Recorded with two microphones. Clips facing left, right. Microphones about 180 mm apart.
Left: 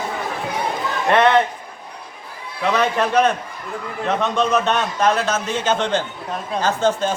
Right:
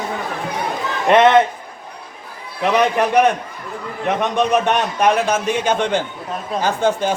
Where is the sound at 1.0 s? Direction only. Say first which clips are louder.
Right 4 dB; 20° right (ahead or behind).